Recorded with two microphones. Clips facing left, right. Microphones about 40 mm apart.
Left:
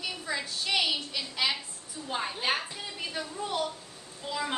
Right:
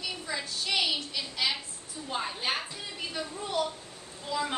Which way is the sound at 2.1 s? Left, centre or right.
Centre.